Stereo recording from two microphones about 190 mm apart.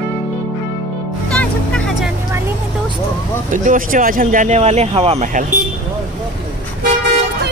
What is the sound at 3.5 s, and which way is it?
Speech, 45° right (ahead or behind).